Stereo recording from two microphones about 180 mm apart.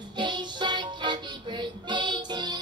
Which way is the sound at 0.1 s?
25° right (ahead or behind).